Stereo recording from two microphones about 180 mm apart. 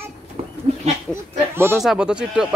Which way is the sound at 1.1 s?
15° right (ahead or behind).